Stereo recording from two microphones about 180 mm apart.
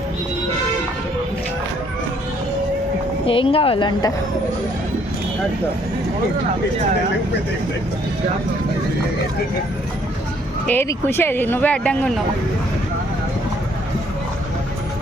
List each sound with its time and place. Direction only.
3.2 s a woman's voice: 30° left (ahead or behind)
10.7 s speech: 10° left (ahead or behind)